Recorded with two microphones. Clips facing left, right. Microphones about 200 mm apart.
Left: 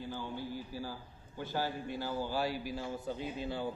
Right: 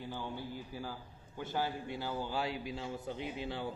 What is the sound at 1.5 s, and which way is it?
A man's voice, 20° right (ahead or behind).